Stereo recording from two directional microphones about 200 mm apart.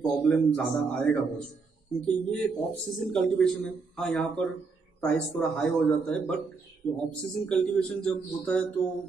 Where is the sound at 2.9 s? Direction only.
Centre (ahead or behind).